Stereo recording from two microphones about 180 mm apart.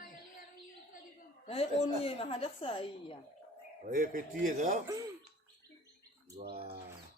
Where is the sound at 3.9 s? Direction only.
50° right (ahead or behind).